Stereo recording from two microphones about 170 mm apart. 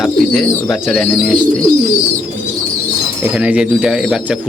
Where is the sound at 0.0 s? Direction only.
Centre (ahead or behind).